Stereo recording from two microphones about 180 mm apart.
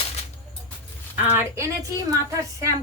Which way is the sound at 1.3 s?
15° right (ahead or behind).